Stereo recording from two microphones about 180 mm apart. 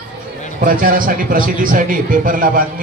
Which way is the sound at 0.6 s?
50° right (ahead or behind).